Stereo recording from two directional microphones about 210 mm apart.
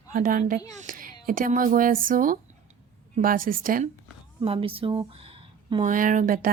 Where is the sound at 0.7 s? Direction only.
40° right (ahead or behind).